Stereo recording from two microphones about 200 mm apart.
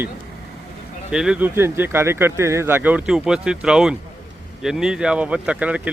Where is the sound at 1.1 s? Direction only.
5° right (ahead or behind).